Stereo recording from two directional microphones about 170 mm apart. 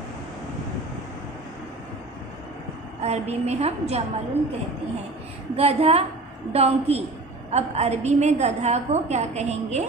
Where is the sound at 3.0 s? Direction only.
40° right (ahead or behind).